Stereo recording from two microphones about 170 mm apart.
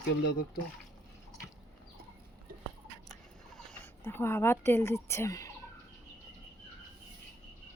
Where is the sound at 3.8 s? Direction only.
15° left (ahead or behind).